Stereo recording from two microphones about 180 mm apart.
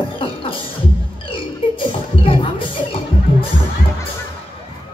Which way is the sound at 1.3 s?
30° left (ahead or behind).